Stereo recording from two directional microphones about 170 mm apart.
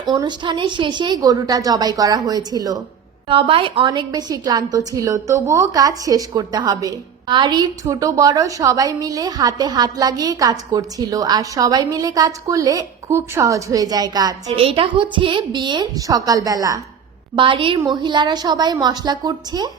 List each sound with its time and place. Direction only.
0.0 s a woman's voice: 25° right (ahead or behind)
14.5 s a woman's voice: 35° right (ahead or behind)